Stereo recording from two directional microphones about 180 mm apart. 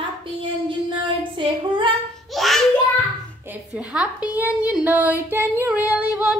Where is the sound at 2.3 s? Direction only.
Centre (ahead or behind).